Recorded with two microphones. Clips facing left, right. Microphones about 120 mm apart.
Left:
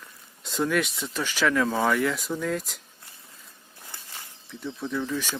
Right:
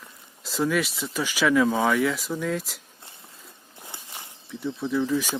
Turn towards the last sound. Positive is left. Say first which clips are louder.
# right 5 dB
turn(degrees=-5)  # may be behind; listen again after turning